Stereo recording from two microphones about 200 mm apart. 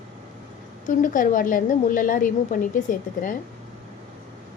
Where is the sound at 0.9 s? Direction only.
40° left (ahead or behind).